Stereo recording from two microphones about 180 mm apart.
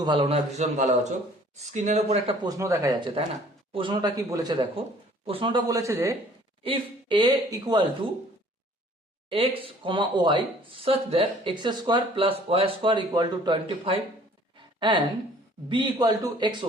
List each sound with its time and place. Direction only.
0.0 s a man's voice: 25° right (ahead or behind)
2.4 s speech: 20° right (ahead or behind)
3.7 s speech: 30° right (ahead or behind)
6.6 s speech: 30° right (ahead or behind)
9.3 s a woman's voice: 30° right (ahead or behind)